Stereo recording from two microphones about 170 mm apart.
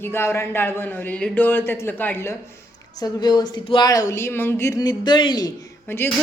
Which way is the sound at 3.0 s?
25° left (ahead or behind).